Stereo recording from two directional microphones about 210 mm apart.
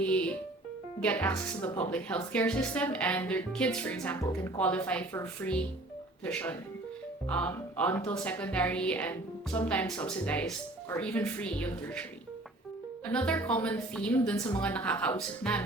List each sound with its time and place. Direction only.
0.0 s music: 5° left (ahead or behind)
1.0 s speech: 5° left (ahead or behind)
13.1 s speech: 5° left (ahead or behind)
14.3 s speech: 15° left (ahead or behind)